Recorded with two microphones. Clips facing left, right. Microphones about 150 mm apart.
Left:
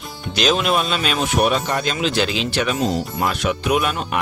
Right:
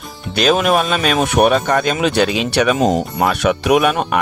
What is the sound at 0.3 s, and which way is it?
Speech, 55° right (ahead or behind).